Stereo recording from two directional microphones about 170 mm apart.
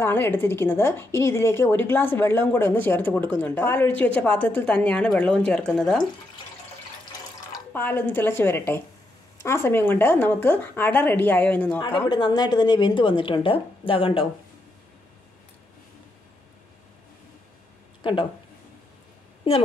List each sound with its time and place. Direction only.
0.0 s a woman's voice: 15° left (ahead or behind)
7.5 s a woman's voice: 10° left (ahead or behind)
11.8 s a woman's voice: 30° left (ahead or behind)
19.4 s a woman's voice: 30° left (ahead or behind)